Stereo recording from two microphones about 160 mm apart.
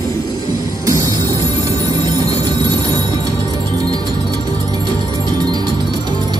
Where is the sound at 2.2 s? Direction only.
25° right (ahead or behind).